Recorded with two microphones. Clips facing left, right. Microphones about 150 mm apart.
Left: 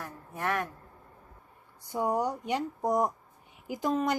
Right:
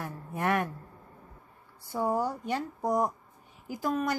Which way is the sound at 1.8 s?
20° left (ahead or behind).